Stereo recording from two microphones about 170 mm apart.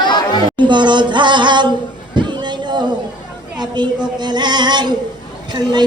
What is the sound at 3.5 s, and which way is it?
Female singing, 25° right (ahead or behind).